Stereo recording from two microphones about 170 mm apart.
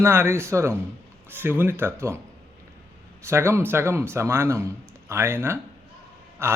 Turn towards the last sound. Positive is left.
turn(degrees=-15)  # may be behind; listen again after turning